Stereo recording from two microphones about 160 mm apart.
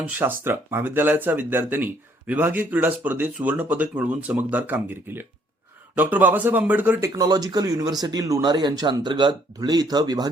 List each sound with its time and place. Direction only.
0.1 s speech: 10° right (ahead or behind)
7.2 s speech: 25° right (ahead or behind)